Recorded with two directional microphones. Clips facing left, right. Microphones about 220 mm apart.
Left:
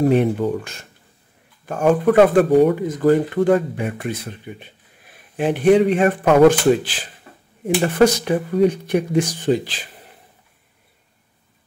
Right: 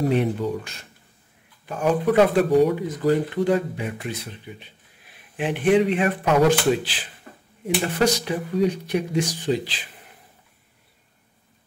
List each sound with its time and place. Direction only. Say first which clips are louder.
0.1 s speech: left 5 dB; 50° left (ahead or behind)